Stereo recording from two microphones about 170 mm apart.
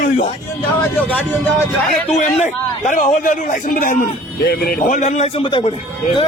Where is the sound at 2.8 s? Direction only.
50° left (ahead or behind); by 5.7 s 30° left (ahead or behind).